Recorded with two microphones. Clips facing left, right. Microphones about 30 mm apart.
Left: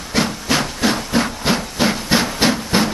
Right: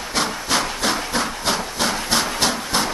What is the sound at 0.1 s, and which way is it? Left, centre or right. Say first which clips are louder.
Train: left 3 dB; centre.